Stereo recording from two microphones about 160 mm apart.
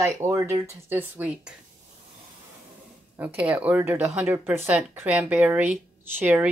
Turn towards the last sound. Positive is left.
turn(degrees=-10)  # may be behind; listen again after turning